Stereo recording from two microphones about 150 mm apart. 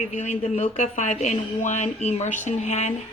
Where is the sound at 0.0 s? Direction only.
50° left (ahead or behind).